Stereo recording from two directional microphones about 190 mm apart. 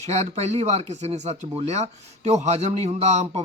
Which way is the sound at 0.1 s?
35° right (ahead or behind).